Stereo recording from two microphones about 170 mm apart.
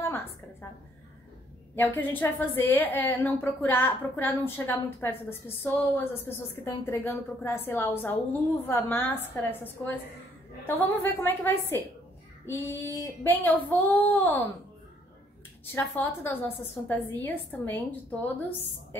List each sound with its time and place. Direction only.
0.0 s a sound: 15° left (ahead or behind)
1.8 s a woman's voice: 10° left (ahead or behind)
11.1 s a woman's voice: 15° left (ahead or behind)
15.6 s a woman's voice: 15° left (ahead or behind)